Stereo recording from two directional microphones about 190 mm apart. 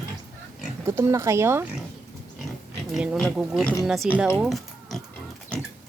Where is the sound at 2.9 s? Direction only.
Centre (ahead or behind).